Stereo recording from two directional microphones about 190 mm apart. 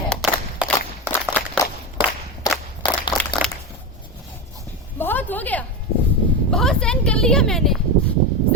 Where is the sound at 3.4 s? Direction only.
Centre (ahead or behind).